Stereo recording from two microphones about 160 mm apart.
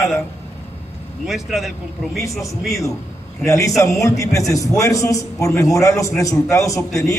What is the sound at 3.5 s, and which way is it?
A man's voice, 20° left (ahead or behind).